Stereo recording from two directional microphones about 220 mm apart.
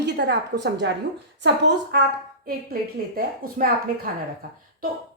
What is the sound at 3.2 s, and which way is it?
Speech, 40° right (ahead or behind).